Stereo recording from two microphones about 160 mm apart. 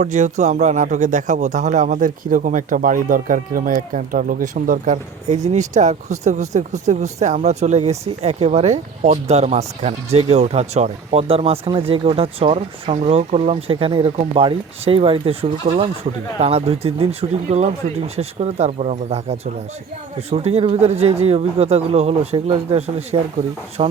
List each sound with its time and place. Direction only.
0.0 s speech: 50° right (ahead or behind)